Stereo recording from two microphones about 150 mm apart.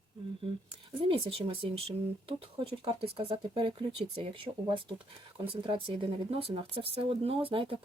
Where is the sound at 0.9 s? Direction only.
35° right (ahead or behind).